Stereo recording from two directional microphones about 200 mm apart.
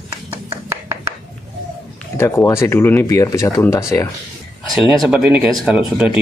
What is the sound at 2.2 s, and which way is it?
Speech, 15° left (ahead or behind).